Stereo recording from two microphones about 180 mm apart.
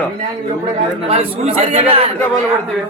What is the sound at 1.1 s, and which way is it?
Speech, 35° right (ahead or behind).